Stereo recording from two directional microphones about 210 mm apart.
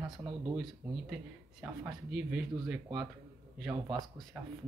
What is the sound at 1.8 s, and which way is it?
Speech, 5° right (ahead or behind).